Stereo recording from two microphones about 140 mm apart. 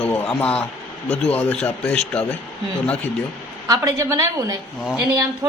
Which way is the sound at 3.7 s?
25° right (ahead or behind).